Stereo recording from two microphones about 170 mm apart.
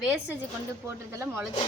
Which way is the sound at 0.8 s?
15° right (ahead or behind).